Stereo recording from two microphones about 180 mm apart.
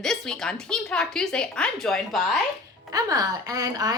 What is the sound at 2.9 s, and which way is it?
A woman's voice, 20° right (ahead or behind).